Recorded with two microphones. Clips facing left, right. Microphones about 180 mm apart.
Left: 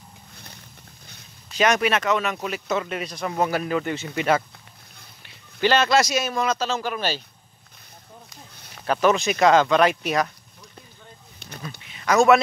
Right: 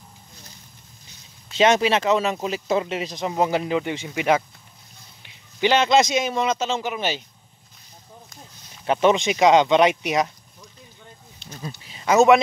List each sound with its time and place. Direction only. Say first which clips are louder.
1.5 s speech: right 3 dB; 25° right (ahead or behind); by 4.5 s 10° right (ahead or behind)
5.6 s speech: right 1 dB; 15° right (ahead or behind)
8.8 s speech: right 2 dB; 20° right (ahead or behind)
12.0 s speech: right 2 dB; 20° right (ahead or behind)